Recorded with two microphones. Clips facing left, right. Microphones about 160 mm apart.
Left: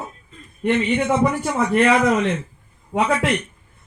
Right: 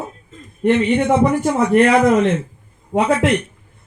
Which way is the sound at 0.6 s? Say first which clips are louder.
Right 4 dB; 30° right (ahead or behind).